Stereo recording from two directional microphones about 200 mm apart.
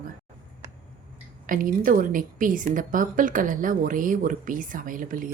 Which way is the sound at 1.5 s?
40° right (ahead or behind).